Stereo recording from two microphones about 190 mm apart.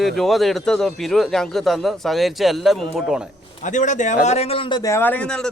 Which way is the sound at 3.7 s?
40° left (ahead or behind).